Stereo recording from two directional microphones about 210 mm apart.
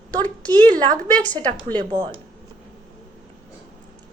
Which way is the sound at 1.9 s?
20° right (ahead or behind).